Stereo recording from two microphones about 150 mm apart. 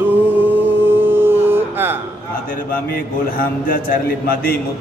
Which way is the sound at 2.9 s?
75° left (ahead or behind).